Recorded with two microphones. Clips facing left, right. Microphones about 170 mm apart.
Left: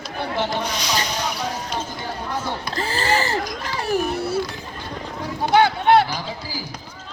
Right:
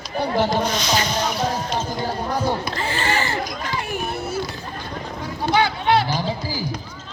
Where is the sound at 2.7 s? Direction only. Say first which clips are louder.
Left 1 dB; 35° left (ahead or behind).